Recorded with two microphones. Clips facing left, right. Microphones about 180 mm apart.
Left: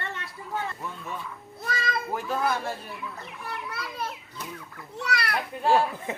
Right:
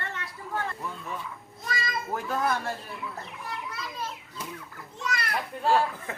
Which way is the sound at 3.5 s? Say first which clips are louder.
Left 2 dB; 65° left (ahead or behind).